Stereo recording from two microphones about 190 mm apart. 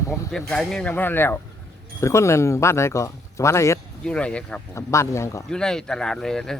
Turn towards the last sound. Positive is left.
turn(degrees=5)  # may be behind; listen again after turning